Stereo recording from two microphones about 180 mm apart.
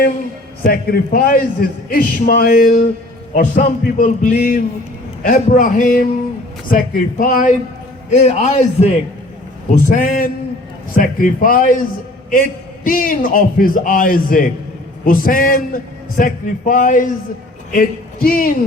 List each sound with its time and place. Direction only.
0.6 s a man's voice: 55° left (ahead or behind)